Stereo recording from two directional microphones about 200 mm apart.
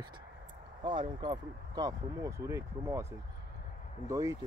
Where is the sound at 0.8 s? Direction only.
25° right (ahead or behind).